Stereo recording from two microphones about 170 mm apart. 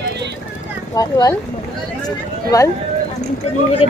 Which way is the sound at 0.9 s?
20° left (ahead or behind).